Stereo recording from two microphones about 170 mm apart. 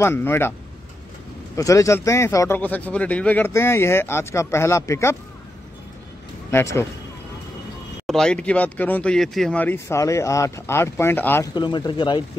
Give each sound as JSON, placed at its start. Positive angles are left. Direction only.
{"t": 0.0, "sound": "a man's voice", "side_deg": 15}
{"t": 1.6, "sound": "a man's voice", "side_deg": 20}
{"t": 6.5, "sound": "a man's voice", "side_deg": 15}
{"t": 8.1, "sound": "a man's voice", "side_deg": 5}
{"t": 11.5, "sound": "speech", "side_deg": 25}